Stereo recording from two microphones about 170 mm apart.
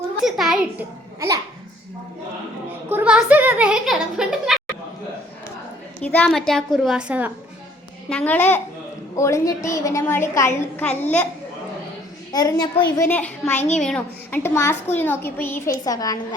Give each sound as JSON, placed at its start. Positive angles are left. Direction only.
{"t": 0.3, "sound": "a woman's voice", "side_deg": 0}
{"t": 2.9, "sound": "speech", "side_deg": -5}
{"t": 6.0, "sound": "a woman's voice", "side_deg": 10}
{"t": 8.1, "sound": "a woman's voice", "side_deg": 10}
{"t": 12.3, "sound": "a woman's voice", "side_deg": 20}
{"t": 13.1, "sound": "a woman's voice", "side_deg": 10}
{"t": 13.5, "sound": "a child's voice", "side_deg": 40}
{"t": 13.7, "sound": "a woman's voice", "side_deg": 5}